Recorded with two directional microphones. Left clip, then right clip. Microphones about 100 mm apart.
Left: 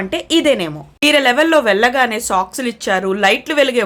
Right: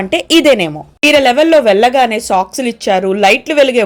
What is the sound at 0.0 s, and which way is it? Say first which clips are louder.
A woman's voice: right 6 dB; 50° right (ahead or behind).